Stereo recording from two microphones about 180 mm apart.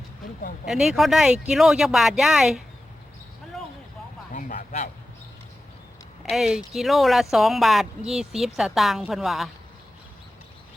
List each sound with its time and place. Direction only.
0.6 s speech: centre (ahead or behind)
4.3 s speech: 45° left (ahead or behind)
6.2 s speech: centre (ahead or behind)